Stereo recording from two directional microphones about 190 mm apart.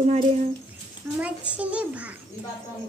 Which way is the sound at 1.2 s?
5° right (ahead or behind).